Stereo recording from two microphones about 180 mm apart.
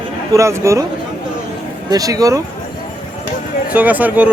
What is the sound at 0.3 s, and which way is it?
Speech, 15° right (ahead or behind).